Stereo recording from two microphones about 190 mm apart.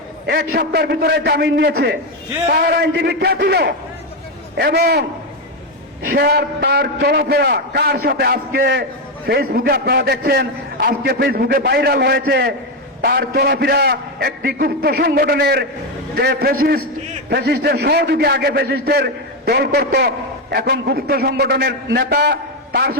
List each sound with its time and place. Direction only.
0.3 s a man's voice: 55° right (ahead or behind)
6.1 s a man's voice: 55° right (ahead or behind)